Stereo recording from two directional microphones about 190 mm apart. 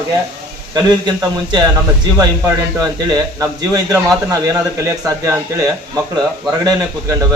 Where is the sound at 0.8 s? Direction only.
20° right (ahead or behind).